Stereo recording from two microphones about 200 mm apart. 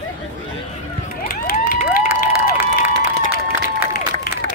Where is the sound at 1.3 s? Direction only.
45° left (ahead or behind).